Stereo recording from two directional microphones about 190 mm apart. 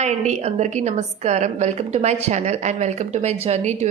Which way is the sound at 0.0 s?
35° right (ahead or behind).